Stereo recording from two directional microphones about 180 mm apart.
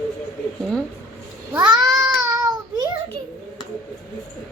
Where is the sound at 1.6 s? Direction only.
20° right (ahead or behind).